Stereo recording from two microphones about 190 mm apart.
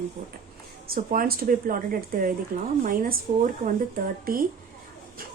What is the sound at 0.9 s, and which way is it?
Speech, 50° right (ahead or behind).